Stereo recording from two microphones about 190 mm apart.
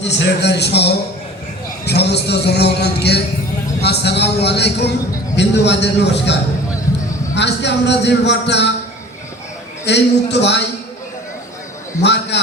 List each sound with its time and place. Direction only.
0.0 s a man's voice: 65° left (ahead or behind)
9.8 s a man's voice: 65° left (ahead or behind)
12.0 s a man's voice: 65° left (ahead or behind)